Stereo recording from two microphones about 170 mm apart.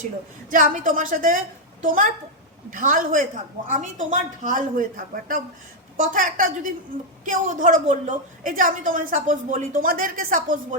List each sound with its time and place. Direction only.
0.5 s a woman's voice: 50° right (ahead or behind)